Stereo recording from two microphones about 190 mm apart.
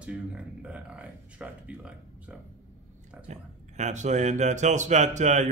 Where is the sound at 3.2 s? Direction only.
40° right (ahead or behind).